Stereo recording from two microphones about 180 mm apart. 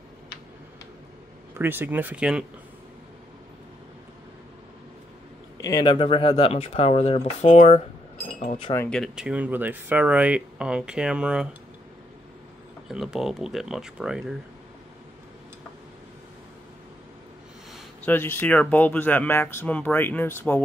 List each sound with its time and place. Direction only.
1.5 s speech: 10° right (ahead or behind)
5.6 s speech: 20° left (ahead or behind); by 7.8 s 40° left (ahead or behind)
8.9 s speech: centre (ahead or behind)
12.8 s speech: centre (ahead or behind)
18.0 s speech: 10° left (ahead or behind)